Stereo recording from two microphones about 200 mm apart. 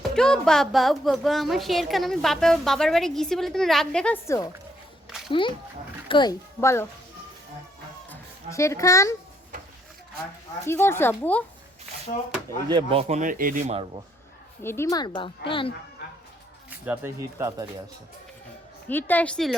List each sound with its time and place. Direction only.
0.1 s a woman's voice: 5° left (ahead or behind)
5.3 s speech: 25° left (ahead or behind)
8.1 s a child's voice: 15° left (ahead or behind)
10.7 s speech: 10° left (ahead or behind)
12.6 s a man's voice: 25° right (ahead or behind)
14.6 s speech: 10° left (ahead or behind)
16.6 s speech: 10° right (ahead or behind)
18.9 s speech: 10° left (ahead or behind)